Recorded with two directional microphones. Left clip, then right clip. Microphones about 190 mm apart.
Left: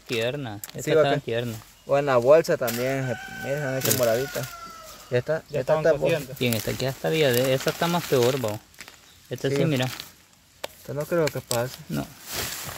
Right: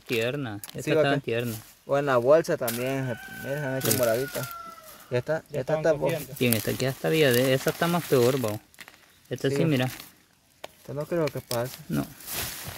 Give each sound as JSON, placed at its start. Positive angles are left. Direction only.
{"t": 0.1, "sound": "speech", "side_deg": -25}